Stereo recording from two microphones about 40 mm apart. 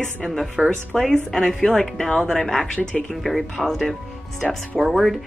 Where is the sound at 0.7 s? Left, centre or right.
Centre.